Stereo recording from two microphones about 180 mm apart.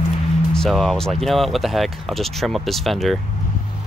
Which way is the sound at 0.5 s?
5° left (ahead or behind).